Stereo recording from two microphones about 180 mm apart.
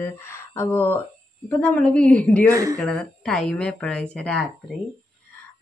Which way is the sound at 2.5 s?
20° right (ahead or behind).